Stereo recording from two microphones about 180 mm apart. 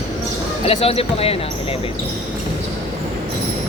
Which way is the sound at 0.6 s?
35° left (ahead or behind).